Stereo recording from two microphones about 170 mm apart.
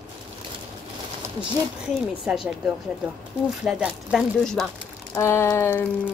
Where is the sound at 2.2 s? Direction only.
5° right (ahead or behind).